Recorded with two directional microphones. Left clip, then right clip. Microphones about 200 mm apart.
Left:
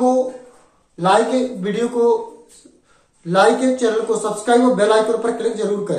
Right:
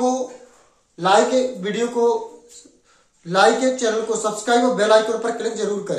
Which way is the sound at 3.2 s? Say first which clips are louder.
Left 1 dB; 10° right (ahead or behind).